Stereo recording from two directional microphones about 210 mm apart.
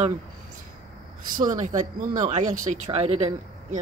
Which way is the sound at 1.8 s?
35° right (ahead or behind).